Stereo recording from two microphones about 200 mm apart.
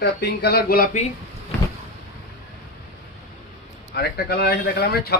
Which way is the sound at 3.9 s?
55° left (ahead or behind).